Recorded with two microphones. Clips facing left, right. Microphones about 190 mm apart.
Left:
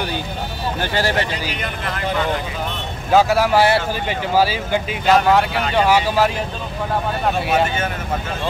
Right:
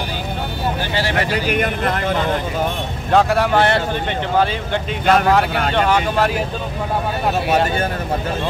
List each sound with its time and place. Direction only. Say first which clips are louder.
1.5 s speech: right 8 dB; 50° right (ahead or behind)
3.1 s speech: left 1 dB; 5° left (ahead or behind)